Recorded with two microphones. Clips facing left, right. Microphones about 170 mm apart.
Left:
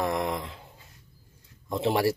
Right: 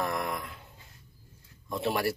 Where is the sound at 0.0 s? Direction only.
25° left (ahead or behind).